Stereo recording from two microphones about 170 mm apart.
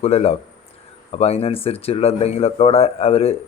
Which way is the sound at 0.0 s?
35° left (ahead or behind).